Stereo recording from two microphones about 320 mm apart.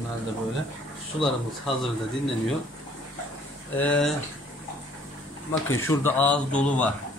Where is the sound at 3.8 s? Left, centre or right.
Centre.